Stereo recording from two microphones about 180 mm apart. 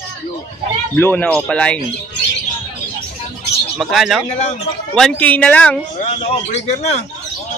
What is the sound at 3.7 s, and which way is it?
A woman's voice, centre (ahead or behind).